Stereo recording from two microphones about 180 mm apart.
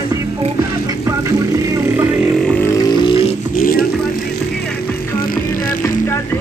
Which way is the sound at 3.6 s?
55° left (ahead or behind).